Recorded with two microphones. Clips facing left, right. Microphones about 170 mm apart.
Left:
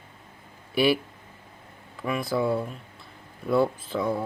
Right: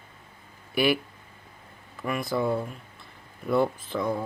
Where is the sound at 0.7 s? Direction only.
30° left (ahead or behind).